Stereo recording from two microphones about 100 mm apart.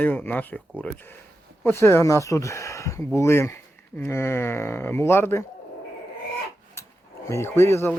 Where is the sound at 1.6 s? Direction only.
25° left (ahead or behind).